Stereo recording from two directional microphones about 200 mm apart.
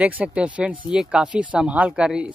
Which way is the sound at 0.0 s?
5° right (ahead or behind).